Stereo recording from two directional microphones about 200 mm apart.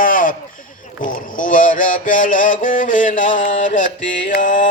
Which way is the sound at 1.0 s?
40° left (ahead or behind).